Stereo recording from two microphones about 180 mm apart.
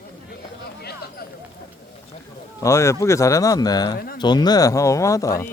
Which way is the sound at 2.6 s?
15° left (ahead or behind).